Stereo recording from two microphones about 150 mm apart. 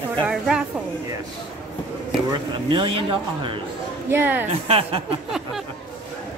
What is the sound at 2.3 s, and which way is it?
Speech, 35° right (ahead or behind).